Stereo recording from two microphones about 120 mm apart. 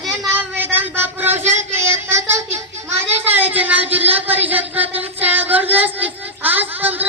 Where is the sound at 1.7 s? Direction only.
20° right (ahead or behind).